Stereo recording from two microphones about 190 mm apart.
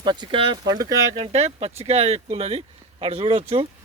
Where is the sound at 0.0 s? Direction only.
25° right (ahead or behind).